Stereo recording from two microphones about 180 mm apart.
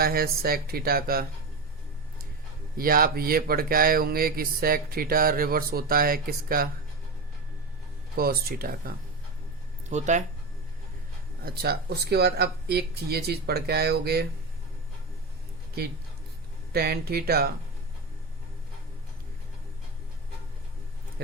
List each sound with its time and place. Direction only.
0.0 s speech: 55° right (ahead or behind)
2.7 s speech: 55° right (ahead or behind)
8.1 s speech: 55° right (ahead or behind)
9.9 s speech: 40° right (ahead or behind)
11.4 s speech: 60° right (ahead or behind)
16.7 s speech: 60° right (ahead or behind)